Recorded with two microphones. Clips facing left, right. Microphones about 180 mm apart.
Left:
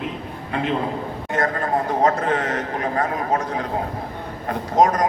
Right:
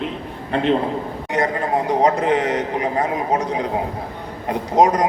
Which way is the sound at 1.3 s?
15° right (ahead or behind).